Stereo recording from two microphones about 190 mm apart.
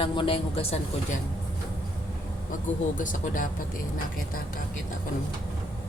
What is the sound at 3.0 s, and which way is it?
Speech, 45° left (ahead or behind).